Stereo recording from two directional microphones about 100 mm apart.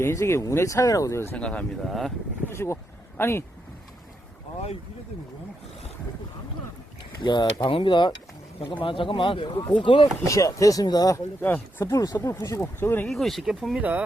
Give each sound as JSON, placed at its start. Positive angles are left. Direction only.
{"t": 0.0, "sound": "speech", "side_deg": 30}
{"t": 1.4, "sound": "speech", "side_deg": 10}
{"t": 1.8, "sound": "speech", "side_deg": 0}
{"t": 2.5, "sound": "speech", "side_deg": 25}
{"t": 7.0, "sound": "speech", "side_deg": 50}
{"t": 10.2, "sound": "speech", "side_deg": 30}
{"t": 11.3, "sound": "speech", "side_deg": 20}
{"t": 11.9, "sound": "speech", "side_deg": 40}
{"t": 12.3, "sound": "speech", "side_deg": 30}
{"t": 13.1, "sound": "speech", "side_deg": 0}
{"t": 13.7, "sound": "speech", "side_deg": -15}